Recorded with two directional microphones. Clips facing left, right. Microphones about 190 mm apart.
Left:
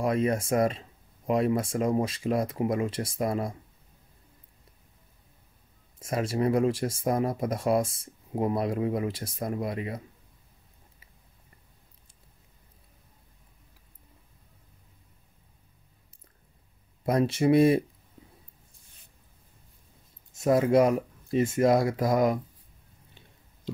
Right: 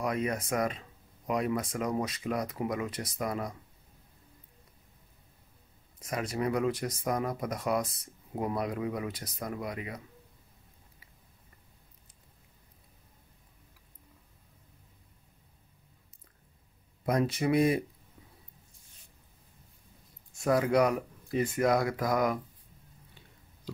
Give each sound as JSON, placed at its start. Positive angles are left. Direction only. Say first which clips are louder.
{"t": 0.0, "sound": "speech", "louder": "left 6 dB", "side_deg": 30}
{"t": 5.9, "sound": "speech", "louder": "left 5 dB", "side_deg": 30}
{"t": 17.0, "sound": "speech", "louder": "left 4 dB", "side_deg": 30}
{"t": 20.3, "sound": "speech", "louder": "left 4 dB", "side_deg": 25}